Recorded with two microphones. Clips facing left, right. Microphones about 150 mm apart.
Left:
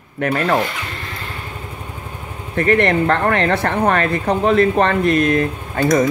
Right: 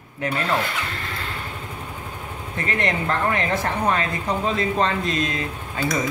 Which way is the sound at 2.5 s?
60° left (ahead or behind).